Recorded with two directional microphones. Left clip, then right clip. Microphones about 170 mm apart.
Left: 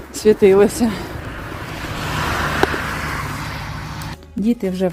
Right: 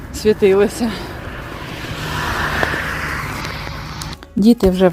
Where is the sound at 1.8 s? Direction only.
60° left (ahead or behind); by 2.9 s 85° left.